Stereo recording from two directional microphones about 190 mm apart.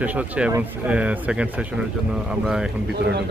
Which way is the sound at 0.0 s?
10° right (ahead or behind).